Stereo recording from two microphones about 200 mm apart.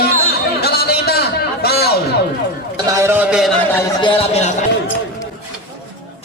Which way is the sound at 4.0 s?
25° left (ahead or behind).